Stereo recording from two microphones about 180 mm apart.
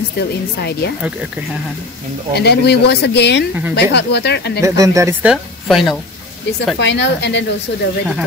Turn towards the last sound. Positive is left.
turn(degrees=75)  # may be behind; listen again after turning